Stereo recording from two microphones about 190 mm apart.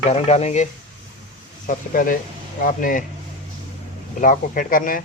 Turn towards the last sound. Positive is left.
turn(degrees=45)  # may be behind; listen again after turning